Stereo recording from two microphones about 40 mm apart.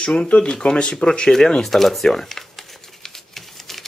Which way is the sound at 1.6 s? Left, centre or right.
Centre.